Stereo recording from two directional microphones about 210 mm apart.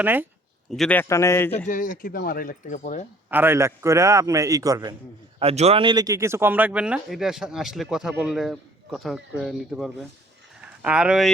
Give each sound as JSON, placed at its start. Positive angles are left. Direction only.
{"t": 0.0, "sound": "a man's voice", "side_deg": -10}
{"t": 0.7, "sound": "a man's voice", "side_deg": 5}
{"t": 1.6, "sound": "speech", "side_deg": 40}
{"t": 3.2, "sound": "a man's voice", "side_deg": -10}
{"t": 5.4, "sound": "speech", "side_deg": -30}